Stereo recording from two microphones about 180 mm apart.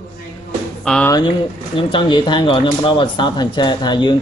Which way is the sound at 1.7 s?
30° left (ahead or behind).